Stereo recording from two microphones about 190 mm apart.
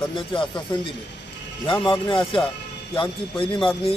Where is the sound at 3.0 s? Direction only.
25° left (ahead or behind).